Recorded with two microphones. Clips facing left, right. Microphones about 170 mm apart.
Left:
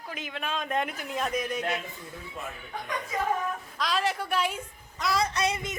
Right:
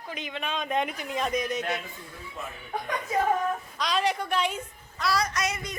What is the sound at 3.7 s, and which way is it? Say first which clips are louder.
Speech: even; centre (ahead or behind).